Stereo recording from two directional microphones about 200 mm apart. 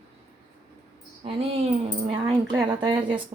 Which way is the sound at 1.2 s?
30° right (ahead or behind).